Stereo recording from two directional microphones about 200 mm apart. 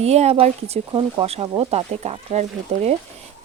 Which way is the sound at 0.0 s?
30° right (ahead or behind).